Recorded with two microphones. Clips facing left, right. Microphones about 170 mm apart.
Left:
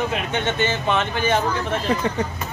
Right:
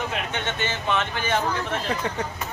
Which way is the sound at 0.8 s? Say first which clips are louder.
Left 1 dB; 25° left (ahead or behind).